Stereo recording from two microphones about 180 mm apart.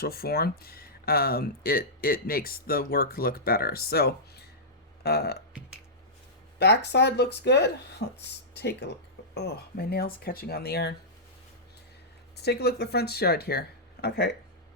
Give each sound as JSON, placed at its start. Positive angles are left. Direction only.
{"t": 0.0, "sound": "speech", "side_deg": 55}
{"t": 6.6, "sound": "speech", "side_deg": 70}
{"t": 12.4, "sound": "speech", "side_deg": 65}